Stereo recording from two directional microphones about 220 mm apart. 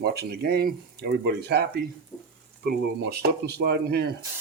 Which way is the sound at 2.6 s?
45° right (ahead or behind).